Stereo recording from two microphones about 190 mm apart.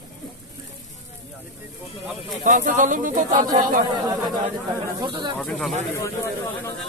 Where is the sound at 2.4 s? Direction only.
45° right (ahead or behind).